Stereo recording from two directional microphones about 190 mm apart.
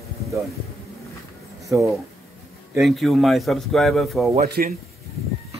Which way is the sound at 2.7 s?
Centre (ahead or behind).